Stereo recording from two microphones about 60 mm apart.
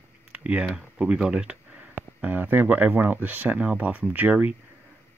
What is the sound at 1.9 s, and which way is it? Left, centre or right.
Speech, right.